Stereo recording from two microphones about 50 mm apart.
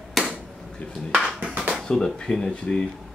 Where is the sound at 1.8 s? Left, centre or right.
Centre.